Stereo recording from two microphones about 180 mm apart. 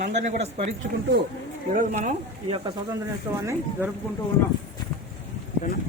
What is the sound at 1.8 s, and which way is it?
Speech, 45° right (ahead or behind).